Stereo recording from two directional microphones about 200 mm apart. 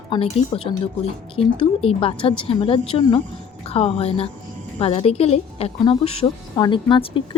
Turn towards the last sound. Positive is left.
turn(degrees=25)  # may be behind; listen again after turning